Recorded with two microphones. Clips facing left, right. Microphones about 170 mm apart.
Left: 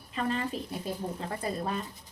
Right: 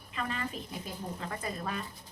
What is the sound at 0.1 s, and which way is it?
Speech, 35° left (ahead or behind).